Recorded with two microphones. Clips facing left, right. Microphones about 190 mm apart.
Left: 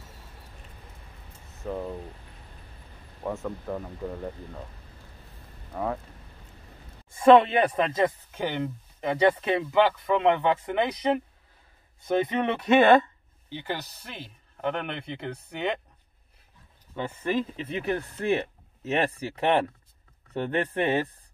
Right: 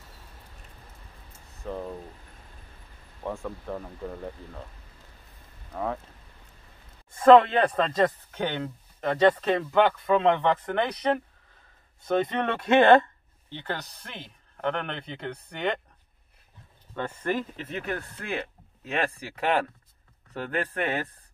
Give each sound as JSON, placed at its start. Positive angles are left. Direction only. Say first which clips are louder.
{"t": 1.5, "sound": "a sound", "louder": "left 2 dB", "side_deg": 0}
{"t": 3.3, "sound": "speech", "louder": "left 2 dB", "side_deg": 5}
{"t": 5.7, "sound": "speech", "louder": "left 1 dB", "side_deg": 0}
{"t": 7.2, "sound": "a man's voice", "louder": "right 1 dB", "side_deg": 10}
{"t": 16.9, "sound": "speech", "louder": "left 1 dB", "side_deg": 10}